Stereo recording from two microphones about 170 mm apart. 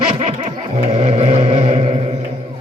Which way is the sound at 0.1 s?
35° right (ahead or behind).